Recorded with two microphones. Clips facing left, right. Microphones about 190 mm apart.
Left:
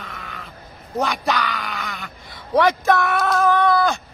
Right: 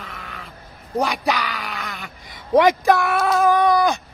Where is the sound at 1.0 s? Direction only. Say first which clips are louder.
Right 1 dB; 5° right (ahead or behind).